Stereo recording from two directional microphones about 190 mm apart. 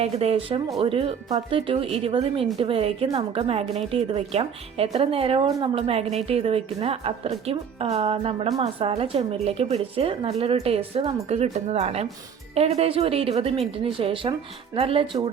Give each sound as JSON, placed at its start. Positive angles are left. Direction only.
{"t": 0.0, "sound": "a woman's voice", "side_deg": -30}